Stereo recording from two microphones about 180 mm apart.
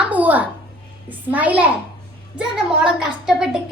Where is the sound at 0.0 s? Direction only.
10° right (ahead or behind).